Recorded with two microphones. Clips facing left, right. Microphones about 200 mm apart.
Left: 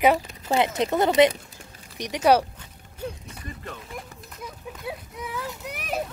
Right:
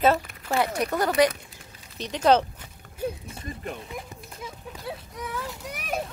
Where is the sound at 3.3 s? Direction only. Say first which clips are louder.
Right 3 dB; 25° right (ahead or behind).